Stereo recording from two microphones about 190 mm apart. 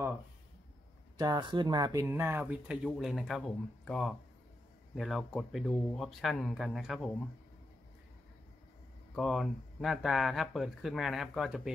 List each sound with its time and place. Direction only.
1.1 s speech: 20° right (ahead or behind)
2.0 s speech: 10° right (ahead or behind)
9.1 s speech: centre (ahead or behind)